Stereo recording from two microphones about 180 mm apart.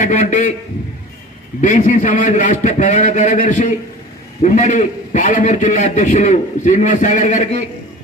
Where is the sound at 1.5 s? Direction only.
45° left (ahead or behind).